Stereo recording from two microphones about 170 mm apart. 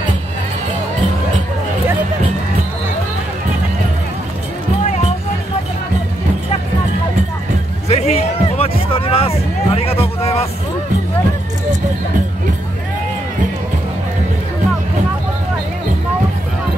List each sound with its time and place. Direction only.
7.9 s music: 40° left (ahead or behind)